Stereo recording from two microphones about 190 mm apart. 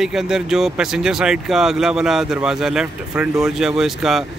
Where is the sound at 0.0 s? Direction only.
Centre (ahead or behind).